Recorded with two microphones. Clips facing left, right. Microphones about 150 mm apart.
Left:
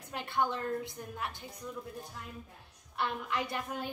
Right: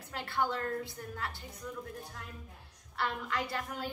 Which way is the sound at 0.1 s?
20° left (ahead or behind).